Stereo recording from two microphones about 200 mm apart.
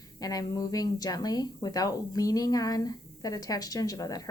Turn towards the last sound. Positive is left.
turn(degrees=15)  # may be behind; listen again after turning